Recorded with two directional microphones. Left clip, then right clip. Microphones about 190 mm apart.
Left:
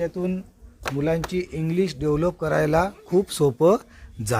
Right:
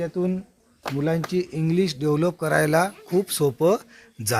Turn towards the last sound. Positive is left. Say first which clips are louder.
# right 3 dB
turn(degrees=15)  # may be behind; listen again after turning